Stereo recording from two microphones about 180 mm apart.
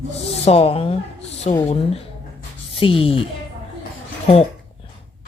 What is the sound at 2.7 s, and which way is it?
Speech, 30° left (ahead or behind).